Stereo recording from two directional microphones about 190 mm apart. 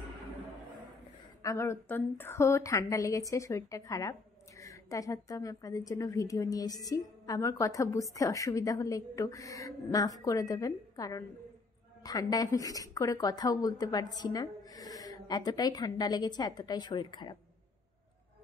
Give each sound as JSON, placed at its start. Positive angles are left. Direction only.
{"t": 1.4, "sound": "a woman's voice", "side_deg": 15}